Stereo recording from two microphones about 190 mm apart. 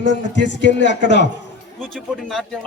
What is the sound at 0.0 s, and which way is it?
A man's voice, 70° left (ahead or behind).